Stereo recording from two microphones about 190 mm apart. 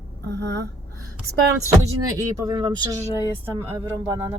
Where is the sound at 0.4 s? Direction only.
65° right (ahead or behind).